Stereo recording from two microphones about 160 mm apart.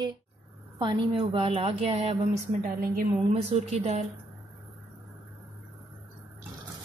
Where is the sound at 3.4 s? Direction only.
45° right (ahead or behind).